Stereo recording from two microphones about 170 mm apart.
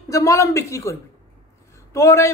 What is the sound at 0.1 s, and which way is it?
A man's voice, 20° left (ahead or behind).